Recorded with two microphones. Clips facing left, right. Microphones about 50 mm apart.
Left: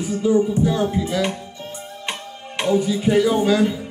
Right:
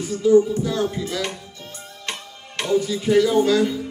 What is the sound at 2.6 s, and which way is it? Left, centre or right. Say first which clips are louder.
Music: left 2 dB; centre.